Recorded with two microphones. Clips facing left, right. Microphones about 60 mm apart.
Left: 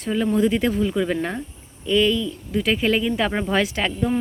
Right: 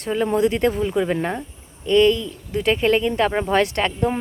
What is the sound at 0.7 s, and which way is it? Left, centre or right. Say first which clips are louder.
Speech: right 1 dB; centre.